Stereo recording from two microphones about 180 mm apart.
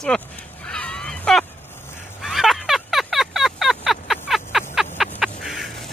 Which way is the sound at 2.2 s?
Centre (ahead or behind).